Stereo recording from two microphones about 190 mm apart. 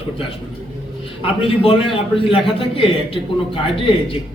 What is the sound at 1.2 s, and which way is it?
A man's voice, 30° left (ahead or behind).